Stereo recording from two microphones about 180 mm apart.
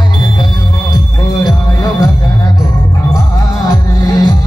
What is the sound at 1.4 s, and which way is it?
Music, 20° left (ahead or behind).